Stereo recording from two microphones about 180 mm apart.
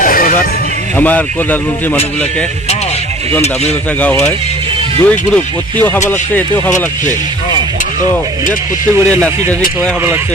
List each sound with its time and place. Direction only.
0.0 s music: 50° left (ahead or behind)
0.9 s speech: 10° left (ahead or behind)
4.0 s speech: 10° left (ahead or behind)